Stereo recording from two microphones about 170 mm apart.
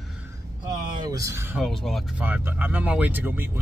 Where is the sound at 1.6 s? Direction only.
Centre (ahead or behind).